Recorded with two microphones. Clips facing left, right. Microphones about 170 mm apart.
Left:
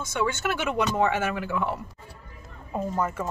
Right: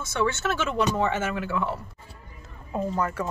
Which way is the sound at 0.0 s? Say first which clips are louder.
Right 1 dB; 10° left (ahead or behind).